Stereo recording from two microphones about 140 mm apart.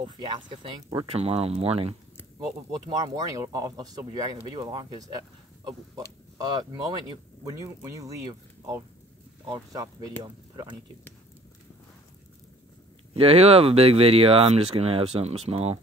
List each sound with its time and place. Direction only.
0.0 s speech: 35° right (ahead or behind)
1.1 s speech: 45° right (ahead or behind)
2.9 s speech: 25° right (ahead or behind)
6.3 s speech: 25° right (ahead or behind)
13.1 s speech: 45° right (ahead or behind)